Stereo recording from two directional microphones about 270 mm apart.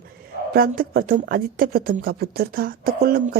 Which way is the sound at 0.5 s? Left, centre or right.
Right.